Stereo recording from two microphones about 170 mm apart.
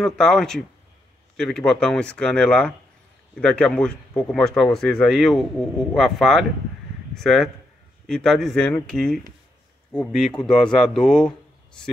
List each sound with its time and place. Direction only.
0.0 s speech: 5° left (ahead or behind)